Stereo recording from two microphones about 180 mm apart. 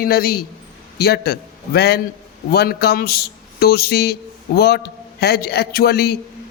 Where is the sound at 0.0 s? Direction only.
55° left (ahead or behind).